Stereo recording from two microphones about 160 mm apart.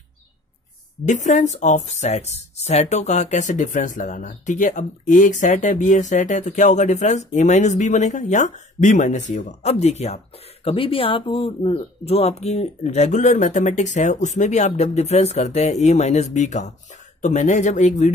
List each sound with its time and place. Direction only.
1.0 s speech: 50° left (ahead or behind)